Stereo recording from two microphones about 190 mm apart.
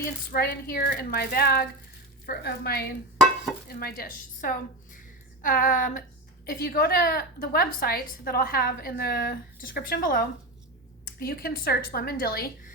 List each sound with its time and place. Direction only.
0.0 s a woman's voice: 50° left (ahead or behind)